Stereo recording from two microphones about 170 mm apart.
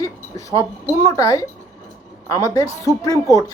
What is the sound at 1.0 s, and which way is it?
Speech, 20° left (ahead or behind).